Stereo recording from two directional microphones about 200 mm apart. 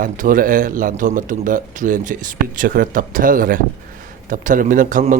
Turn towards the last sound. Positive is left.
turn(degrees=-40)  # may be behind; listen again after turning